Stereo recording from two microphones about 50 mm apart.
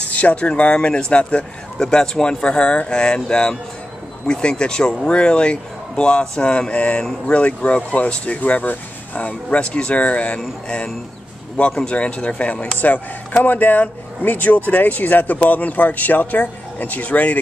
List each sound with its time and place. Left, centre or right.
0.1 s speech: left
11.8 s speech: left